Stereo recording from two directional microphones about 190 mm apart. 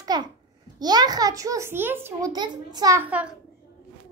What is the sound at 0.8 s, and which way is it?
A child's voice, 20° right (ahead or behind).